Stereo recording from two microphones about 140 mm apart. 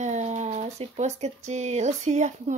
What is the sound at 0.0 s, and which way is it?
Speech, 55° right (ahead or behind).